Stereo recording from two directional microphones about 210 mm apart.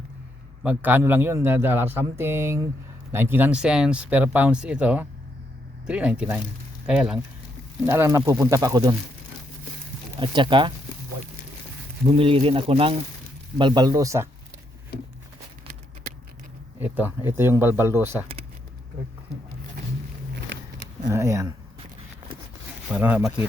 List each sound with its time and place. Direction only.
0.6 s a man's voice: 5° right (ahead or behind)
10.2 s speech: 20° right (ahead or behind)
12.0 s speech: 25° right (ahead or behind)
16.8 s a man's voice: 10° right (ahead or behind)
21.1 s a man's voice: 15° right (ahead or behind)
22.9 s speech: 5° right (ahead or behind)